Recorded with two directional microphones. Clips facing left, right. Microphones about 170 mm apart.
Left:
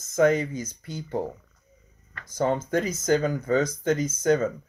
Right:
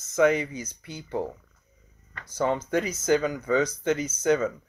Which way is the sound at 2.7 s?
10° right (ahead or behind).